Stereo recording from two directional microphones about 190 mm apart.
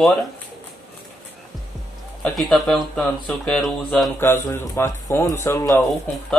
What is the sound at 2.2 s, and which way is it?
Speech, centre (ahead or behind).